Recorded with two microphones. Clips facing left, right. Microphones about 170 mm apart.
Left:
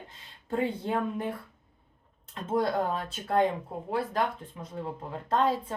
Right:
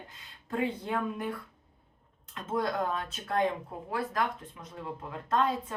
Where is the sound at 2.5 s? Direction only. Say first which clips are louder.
Left 3 dB; 30° left (ahead or behind).